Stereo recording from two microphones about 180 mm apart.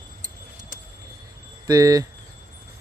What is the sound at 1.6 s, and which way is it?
Speech, 20° right (ahead or behind).